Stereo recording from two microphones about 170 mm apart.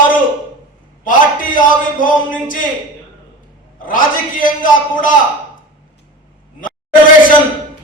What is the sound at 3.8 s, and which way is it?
A man's voice, 50° left (ahead or behind).